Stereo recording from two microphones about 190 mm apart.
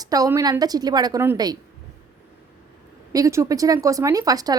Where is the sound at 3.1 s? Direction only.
15° right (ahead or behind).